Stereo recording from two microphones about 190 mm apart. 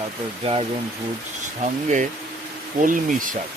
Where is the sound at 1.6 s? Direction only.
40° right (ahead or behind).